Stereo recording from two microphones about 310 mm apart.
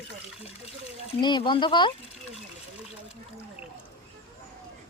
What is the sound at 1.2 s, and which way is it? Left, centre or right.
Speech, centre.